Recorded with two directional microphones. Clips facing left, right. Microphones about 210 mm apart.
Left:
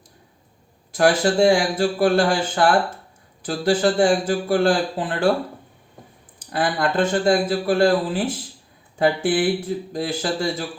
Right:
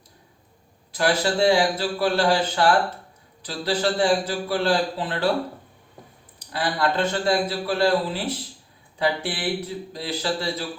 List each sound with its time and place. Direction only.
0.9 s a man's voice: 50° left (ahead or behind)
6.4 s a man's voice: 50° left (ahead or behind)